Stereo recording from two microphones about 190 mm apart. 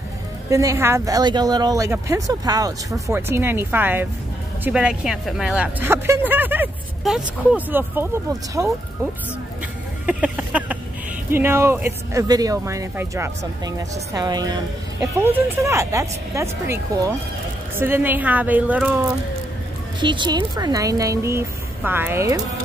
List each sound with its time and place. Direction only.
0.5 s speech: 15° right (ahead or behind)
10.0 s a sound: 10° right (ahead or behind)
11.2 s speech: 10° right (ahead or behind)
20.0 s speech: 25° right (ahead or behind)